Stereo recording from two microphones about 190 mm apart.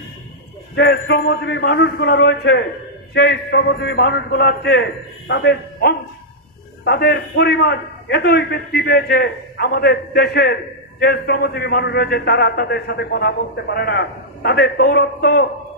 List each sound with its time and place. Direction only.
0.7 s a man's voice: 65° left (ahead or behind)